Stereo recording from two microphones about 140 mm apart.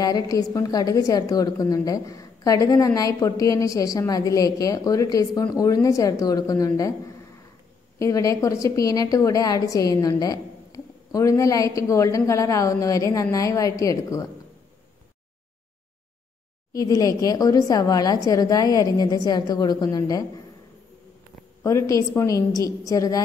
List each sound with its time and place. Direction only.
0.0 s a woman's voice: 25° left (ahead or behind)
8.0 s a woman's voice: 25° left (ahead or behind)
16.7 s a woman's voice: 25° left (ahead or behind)
21.6 s a woman's voice: 20° left (ahead or behind)